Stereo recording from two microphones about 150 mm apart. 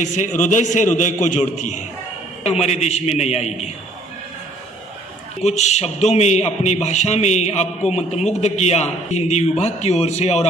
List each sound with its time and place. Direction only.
0.0 s a man's voice: 55° left (ahead or behind)
5.4 s a man's voice: 50° left (ahead or behind)